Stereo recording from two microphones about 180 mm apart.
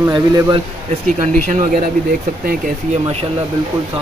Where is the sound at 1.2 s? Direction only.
40° right (ahead or behind).